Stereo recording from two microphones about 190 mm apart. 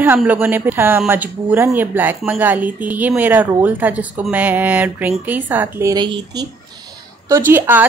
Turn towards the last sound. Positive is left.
turn(degrees=-10)  # may be behind; listen again after turning